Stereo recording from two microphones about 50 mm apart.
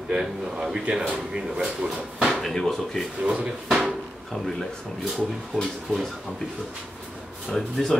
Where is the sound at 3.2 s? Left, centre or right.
Right.